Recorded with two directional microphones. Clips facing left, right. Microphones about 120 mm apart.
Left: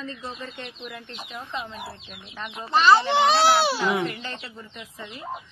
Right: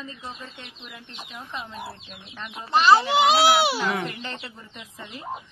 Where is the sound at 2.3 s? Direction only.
30° left (ahead or behind).